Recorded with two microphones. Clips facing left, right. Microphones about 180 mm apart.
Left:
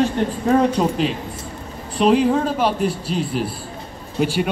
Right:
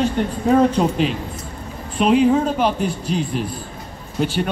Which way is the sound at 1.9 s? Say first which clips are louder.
Right 1 dB; centre (ahead or behind).